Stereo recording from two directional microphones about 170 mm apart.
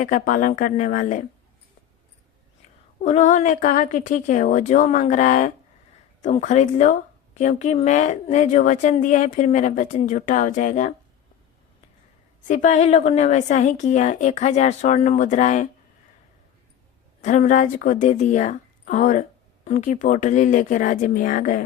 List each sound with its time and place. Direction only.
0.0 s speech: 50° left (ahead or behind)
3.0 s speech: 45° left (ahead or behind)
12.5 s speech: 45° left (ahead or behind)
17.2 s speech: 45° left (ahead or behind)